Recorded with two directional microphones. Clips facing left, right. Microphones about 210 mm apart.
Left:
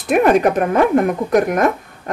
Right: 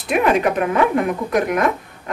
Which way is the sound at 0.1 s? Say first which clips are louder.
Left 4 dB; 45° left (ahead or behind).